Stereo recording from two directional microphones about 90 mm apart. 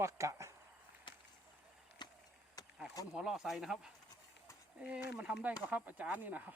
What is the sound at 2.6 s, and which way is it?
Insect, 45° left (ahead or behind).